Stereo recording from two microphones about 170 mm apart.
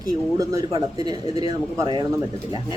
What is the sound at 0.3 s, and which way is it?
Speech, 20° right (ahead or behind).